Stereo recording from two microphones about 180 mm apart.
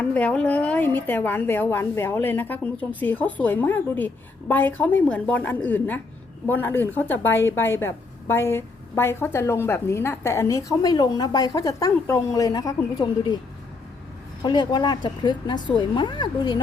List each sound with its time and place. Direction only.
0.0 s a woman's voice: 5° left (ahead or behind)
14.4 s speech: 25° left (ahead or behind)